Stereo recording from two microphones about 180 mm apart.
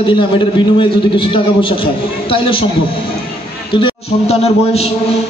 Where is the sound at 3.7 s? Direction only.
30° left (ahead or behind).